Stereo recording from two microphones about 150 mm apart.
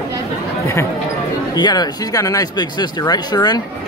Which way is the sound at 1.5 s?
25° left (ahead or behind).